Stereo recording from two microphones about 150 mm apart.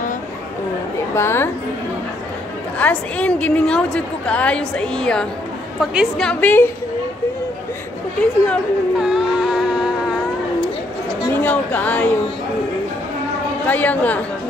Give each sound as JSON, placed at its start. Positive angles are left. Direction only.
{"t": 1.1, "sound": "a woman's voice", "side_deg": 15}
{"t": 2.8, "sound": "a woman's voice", "side_deg": 10}
{"t": 9.0, "sound": "a sound", "side_deg": -5}
{"t": 11.3, "sound": "a woman's voice", "side_deg": 10}
{"t": 13.7, "sound": "a woman's voice", "side_deg": 10}